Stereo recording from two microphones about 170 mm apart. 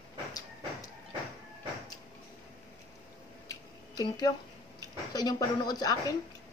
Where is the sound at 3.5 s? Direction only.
25° left (ahead or behind).